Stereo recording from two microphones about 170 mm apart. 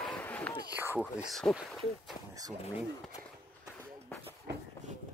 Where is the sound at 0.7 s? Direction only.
10° right (ahead or behind).